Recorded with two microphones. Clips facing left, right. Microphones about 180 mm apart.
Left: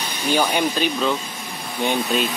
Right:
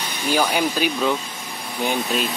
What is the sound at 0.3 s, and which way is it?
Speech, centre (ahead or behind).